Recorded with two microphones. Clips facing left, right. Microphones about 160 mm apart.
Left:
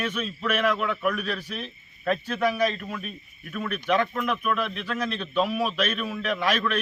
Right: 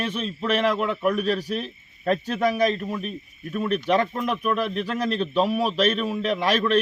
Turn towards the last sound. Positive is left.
turn(degrees=-35)  # may be behind; listen again after turning